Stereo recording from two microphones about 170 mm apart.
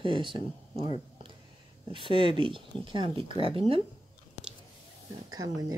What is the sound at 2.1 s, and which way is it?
Speech, 30° right (ahead or behind).